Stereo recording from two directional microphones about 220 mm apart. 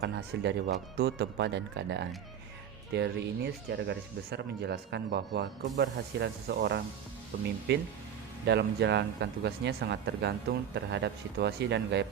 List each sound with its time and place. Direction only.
0.0 s speech: 50° right (ahead or behind)